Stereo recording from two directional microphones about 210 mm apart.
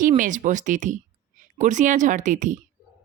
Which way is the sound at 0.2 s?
35° right (ahead or behind).